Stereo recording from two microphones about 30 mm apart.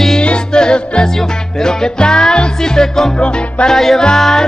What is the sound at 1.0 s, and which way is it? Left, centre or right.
Music, centre.